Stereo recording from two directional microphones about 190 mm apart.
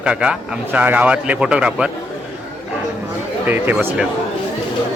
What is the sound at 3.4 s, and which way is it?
Speech, 10° right (ahead or behind).